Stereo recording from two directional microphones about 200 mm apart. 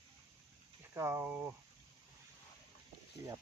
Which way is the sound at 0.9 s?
15° right (ahead or behind).